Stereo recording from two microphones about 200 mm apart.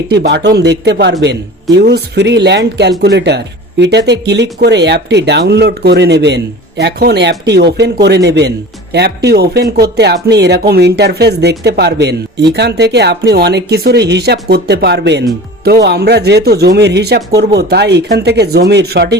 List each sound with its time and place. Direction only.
0.1 s speech: 55° right (ahead or behind)